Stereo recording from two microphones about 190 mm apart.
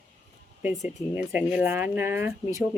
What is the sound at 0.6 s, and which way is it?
Speech, 10° right (ahead or behind).